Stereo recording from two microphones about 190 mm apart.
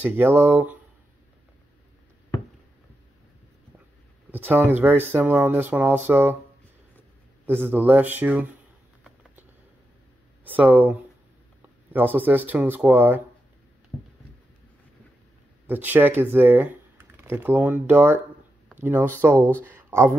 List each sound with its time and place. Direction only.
0.0 s speech: 10° right (ahead or behind)
4.3 s speech: 10° right (ahead or behind)
7.4 s speech: 10° right (ahead or behind)
10.4 s speech: 10° right (ahead or behind)
15.6 s speech: 10° right (ahead or behind)
19.6 s a sound: 15° right (ahead or behind)